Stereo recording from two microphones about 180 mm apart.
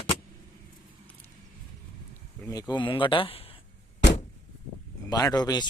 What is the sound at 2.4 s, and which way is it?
Speech, 20° left (ahead or behind).